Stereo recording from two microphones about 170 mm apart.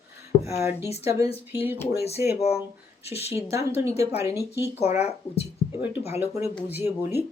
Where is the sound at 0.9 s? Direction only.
35° left (ahead or behind).